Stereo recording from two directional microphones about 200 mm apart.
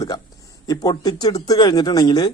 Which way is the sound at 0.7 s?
20° left (ahead or behind).